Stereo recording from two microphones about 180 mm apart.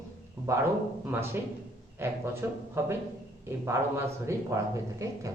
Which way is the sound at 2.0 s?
15° right (ahead or behind).